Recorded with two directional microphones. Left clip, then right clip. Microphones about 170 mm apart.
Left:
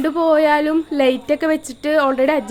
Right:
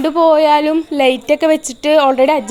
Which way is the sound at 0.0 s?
10° right (ahead or behind).